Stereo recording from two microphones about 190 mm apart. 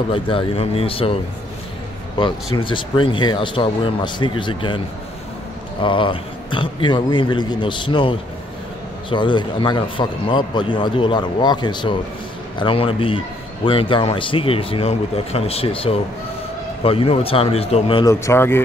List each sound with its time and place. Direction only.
0.1 s a man's voice: 30° left (ahead or behind)
2.1 s a man's voice: 25° left (ahead or behind)
18.0 s speech: 15° left (ahead or behind)